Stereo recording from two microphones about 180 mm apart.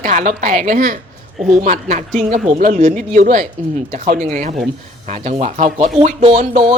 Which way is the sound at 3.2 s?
45° right (ahead or behind).